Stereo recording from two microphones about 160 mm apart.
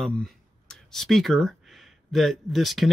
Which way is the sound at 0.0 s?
5° left (ahead or behind).